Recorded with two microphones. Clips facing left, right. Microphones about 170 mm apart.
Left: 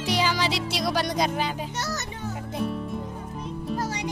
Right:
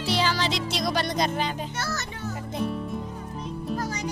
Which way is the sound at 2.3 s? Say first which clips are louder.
Even; centre (ahead or behind).